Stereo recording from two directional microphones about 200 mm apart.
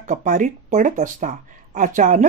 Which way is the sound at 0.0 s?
40° right (ahead or behind).